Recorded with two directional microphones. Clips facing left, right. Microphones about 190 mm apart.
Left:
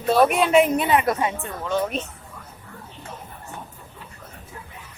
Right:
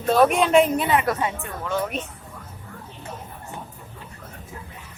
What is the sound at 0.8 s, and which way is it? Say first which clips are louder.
Speech: left 1 dB; 20° left (ahead or behind).